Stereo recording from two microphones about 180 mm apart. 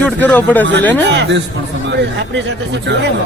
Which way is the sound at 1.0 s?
80° right.